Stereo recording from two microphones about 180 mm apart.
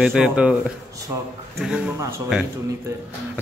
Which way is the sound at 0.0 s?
5° right (ahead or behind).